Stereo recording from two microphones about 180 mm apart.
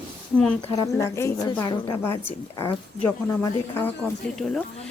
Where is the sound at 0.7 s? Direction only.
15° left (ahead or behind).